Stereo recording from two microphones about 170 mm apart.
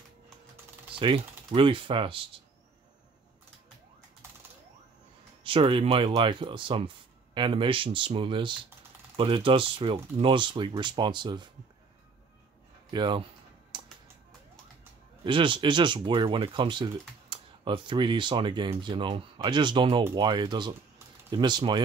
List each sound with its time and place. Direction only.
0.9 s speech: 30° right (ahead or behind)
5.4 s speech: 30° right (ahead or behind)
12.9 s speech: 25° right (ahead or behind)
13.7 s music: 25° right (ahead or behind)
15.2 s speech: 30° right (ahead or behind)